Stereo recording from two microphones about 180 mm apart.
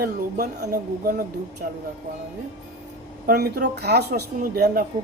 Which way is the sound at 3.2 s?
55° right (ahead or behind).